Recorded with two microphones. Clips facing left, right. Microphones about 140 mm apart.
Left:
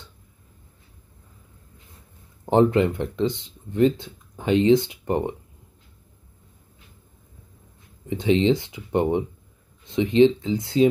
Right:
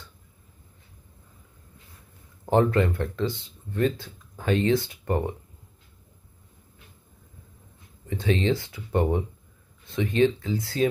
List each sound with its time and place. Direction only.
2.4 s speech: 20° left (ahead or behind)
8.1 s speech: 20° left (ahead or behind)